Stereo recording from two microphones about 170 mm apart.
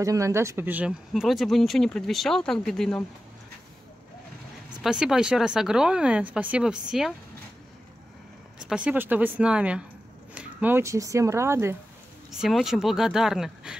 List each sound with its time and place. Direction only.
0.0 s speech: 20° right (ahead or behind); by 3.0 s centre (ahead or behind)
4.8 s speech: 5° right (ahead or behind)
8.5 s speech: 5° right (ahead or behind)
12.3 s speech: centre (ahead or behind)